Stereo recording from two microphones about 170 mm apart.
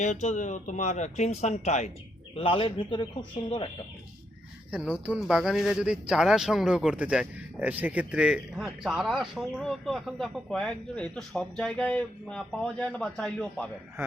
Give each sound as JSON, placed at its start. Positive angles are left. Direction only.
{"t": 0.0, "sound": "speech", "side_deg": 45}
{"t": 2.4, "sound": "a man's voice", "side_deg": 30}
{"t": 4.7, "sound": "speech", "side_deg": -5}